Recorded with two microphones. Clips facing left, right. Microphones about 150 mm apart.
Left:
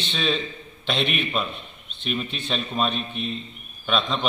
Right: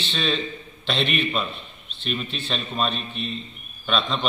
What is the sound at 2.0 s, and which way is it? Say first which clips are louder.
A man's voice: left 1 dB; 10° left (ahead or behind).